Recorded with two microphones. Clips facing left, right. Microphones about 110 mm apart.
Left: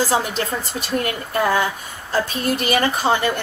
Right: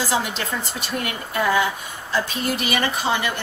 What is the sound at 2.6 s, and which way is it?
Speech, 40° left (ahead or behind).